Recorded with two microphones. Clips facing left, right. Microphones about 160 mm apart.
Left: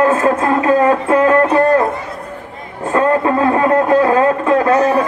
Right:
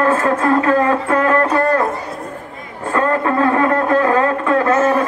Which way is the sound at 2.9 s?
20° left (ahead or behind).